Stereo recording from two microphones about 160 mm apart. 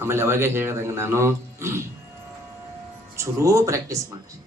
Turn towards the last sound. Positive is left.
turn(degrees=-20)  # may be behind; listen again after turning